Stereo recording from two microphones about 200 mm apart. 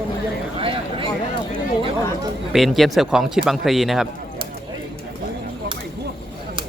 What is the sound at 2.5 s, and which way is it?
Speech, centre (ahead or behind).